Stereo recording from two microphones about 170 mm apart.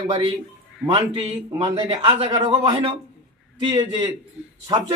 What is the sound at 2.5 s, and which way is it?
A man's voice, 35° right (ahead or behind).